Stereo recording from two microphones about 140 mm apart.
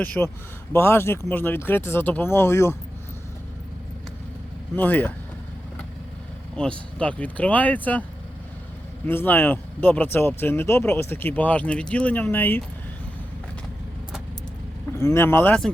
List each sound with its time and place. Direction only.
0.0 s speech: 10° left (ahead or behind)
4.7 s speech: 10° left (ahead or behind)
6.6 s speech: 10° left (ahead or behind)
9.0 s speech: 15° left (ahead or behind)
14.9 s speech: 20° left (ahead or behind)